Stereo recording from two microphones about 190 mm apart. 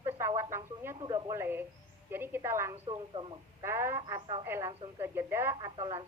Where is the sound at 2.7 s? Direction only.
30° right (ahead or behind).